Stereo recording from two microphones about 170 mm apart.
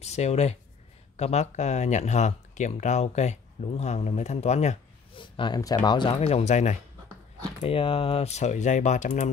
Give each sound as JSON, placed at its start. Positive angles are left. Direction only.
{"t": 0.0, "sound": "speech", "side_deg": 40}
{"t": 5.2, "sound": "speech", "side_deg": 25}